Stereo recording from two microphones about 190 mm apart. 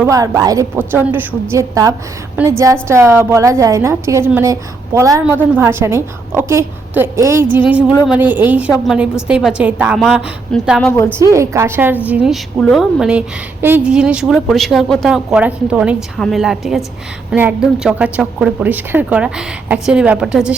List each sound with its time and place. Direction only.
0.0 s a woman's voice: 15° right (ahead or behind)
10.9 s a woman's voice: 15° left (ahead or behind)
11.2 s a woman's voice: 15° right (ahead or behind)